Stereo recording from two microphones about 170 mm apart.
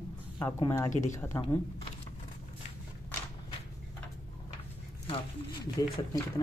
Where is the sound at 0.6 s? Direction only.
15° left (ahead or behind).